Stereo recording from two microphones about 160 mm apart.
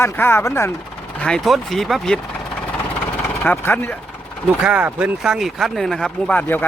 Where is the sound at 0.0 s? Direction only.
15° left (ahead or behind).